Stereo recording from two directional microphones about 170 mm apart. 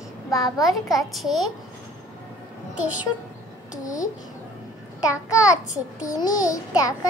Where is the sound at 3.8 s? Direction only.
20° left (ahead or behind).